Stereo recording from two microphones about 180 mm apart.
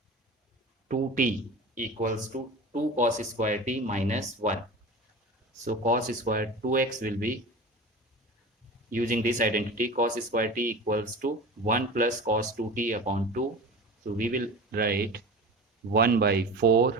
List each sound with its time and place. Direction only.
0.9 s speech: 50° right (ahead or behind)
5.6 s speech: 45° right (ahead or behind)
8.9 s speech: 50° right (ahead or behind)